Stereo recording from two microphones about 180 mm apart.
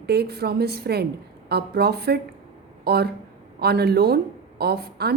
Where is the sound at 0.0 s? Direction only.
65° right (ahead or behind).